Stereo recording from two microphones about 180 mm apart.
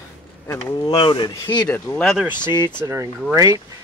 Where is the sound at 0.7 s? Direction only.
25° left (ahead or behind); by 2.3 s centre (ahead or behind).